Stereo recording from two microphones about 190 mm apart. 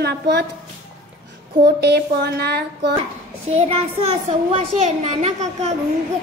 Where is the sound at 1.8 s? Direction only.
60° right (ahead or behind).